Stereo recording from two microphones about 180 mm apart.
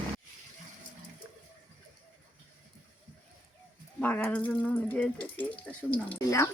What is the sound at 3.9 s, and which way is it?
Speech, 10° left (ahead or behind).